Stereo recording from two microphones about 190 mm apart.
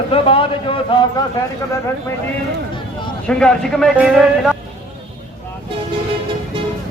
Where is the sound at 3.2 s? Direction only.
5° left (ahead or behind).